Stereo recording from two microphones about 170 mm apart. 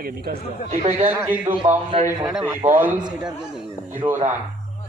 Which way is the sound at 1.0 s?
10° right (ahead or behind).